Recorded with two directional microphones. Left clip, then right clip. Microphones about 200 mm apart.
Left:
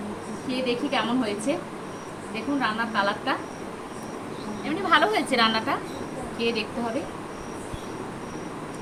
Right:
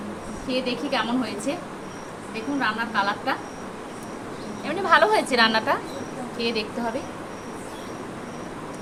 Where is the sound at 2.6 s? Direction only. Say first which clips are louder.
Right 1 dB; 15° right (ahead or behind).